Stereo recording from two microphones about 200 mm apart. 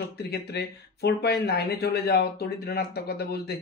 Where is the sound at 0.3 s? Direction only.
55° left (ahead or behind).